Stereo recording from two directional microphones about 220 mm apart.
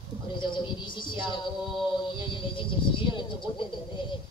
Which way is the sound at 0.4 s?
20° left (ahead or behind).